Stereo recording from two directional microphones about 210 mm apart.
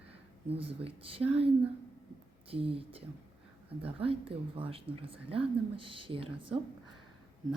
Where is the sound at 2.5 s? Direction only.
25° right (ahead or behind).